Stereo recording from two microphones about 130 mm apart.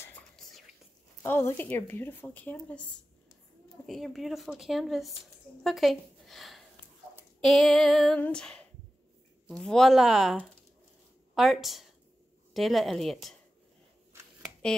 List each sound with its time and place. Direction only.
1.2 s speech: 15° left (ahead or behind)
3.8 s a woman's voice: centre (ahead or behind)
11.3 s a woman's voice: centre (ahead or behind)